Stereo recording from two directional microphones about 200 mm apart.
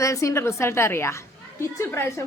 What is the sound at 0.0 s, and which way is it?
A woman's voice, 15° left (ahead or behind).